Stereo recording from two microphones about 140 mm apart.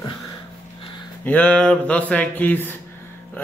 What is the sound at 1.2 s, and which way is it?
Speech, 10° left (ahead or behind).